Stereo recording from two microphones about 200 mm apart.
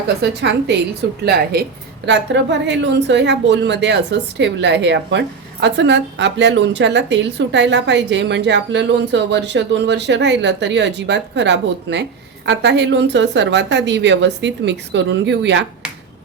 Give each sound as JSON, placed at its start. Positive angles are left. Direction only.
{"t": 0.2, "sound": "speech", "side_deg": -60}